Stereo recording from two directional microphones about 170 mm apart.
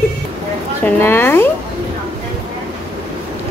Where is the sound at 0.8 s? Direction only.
10° left (ahead or behind).